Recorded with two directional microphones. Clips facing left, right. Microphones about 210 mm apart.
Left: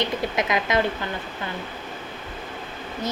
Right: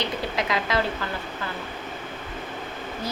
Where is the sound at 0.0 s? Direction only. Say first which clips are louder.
Left 3 dB; 20° left (ahead or behind).